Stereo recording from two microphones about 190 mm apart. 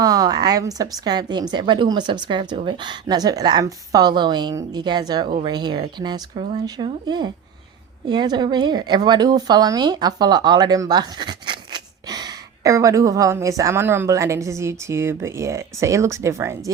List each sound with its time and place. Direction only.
0.0 s speech: 20° right (ahead or behind)